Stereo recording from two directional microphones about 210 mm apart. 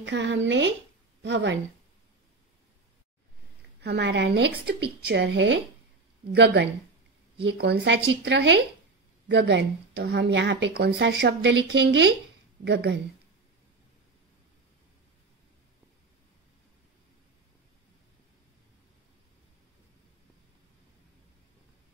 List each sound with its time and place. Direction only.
0.0 s a woman's voice: 60° right (ahead or behind)
3.8 s a woman's voice: 55° right (ahead or behind)